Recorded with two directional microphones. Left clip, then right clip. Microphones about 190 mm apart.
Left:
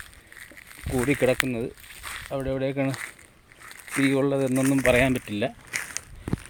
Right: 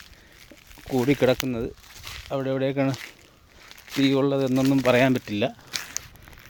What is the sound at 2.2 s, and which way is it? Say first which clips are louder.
Speech: right 3 dB; 25° right (ahead or behind).